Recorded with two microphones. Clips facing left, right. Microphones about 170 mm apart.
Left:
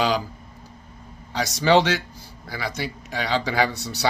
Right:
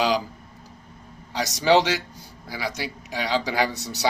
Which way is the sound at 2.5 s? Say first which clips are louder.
Left 1 dB; 10° right (ahead or behind).